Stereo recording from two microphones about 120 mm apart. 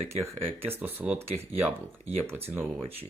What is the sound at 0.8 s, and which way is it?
Speech, 15° right (ahead or behind).